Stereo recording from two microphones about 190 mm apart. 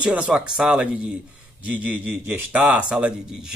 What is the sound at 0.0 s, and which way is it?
Speech, 5° right (ahead or behind).